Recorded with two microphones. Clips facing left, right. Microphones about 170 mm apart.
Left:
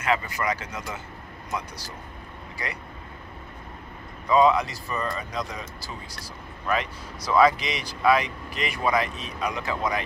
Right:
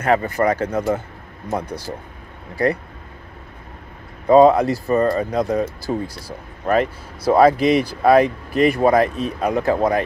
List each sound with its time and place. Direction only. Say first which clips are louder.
0.0 s speech: right 9 dB; 55° right (ahead or behind)
4.3 s speech: right 8 dB; 55° right (ahead or behind)